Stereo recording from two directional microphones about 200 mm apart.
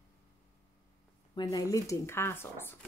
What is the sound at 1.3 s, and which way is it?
Speech, 20° left (ahead or behind).